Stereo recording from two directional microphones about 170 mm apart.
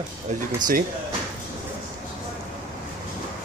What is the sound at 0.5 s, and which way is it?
Speech, 50° right (ahead or behind).